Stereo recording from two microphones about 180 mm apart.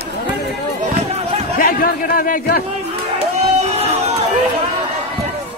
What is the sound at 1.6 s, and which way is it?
A man's voice, 55° left (ahead or behind).